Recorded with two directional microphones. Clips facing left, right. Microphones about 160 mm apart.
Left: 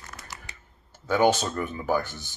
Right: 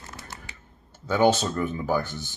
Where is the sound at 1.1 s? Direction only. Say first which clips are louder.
Right 1 dB; 15° left (ahead or behind).